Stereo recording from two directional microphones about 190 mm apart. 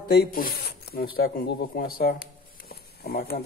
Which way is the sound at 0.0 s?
55° left (ahead or behind).